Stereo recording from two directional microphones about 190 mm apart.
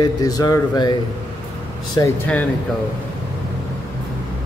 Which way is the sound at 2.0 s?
20° left (ahead or behind).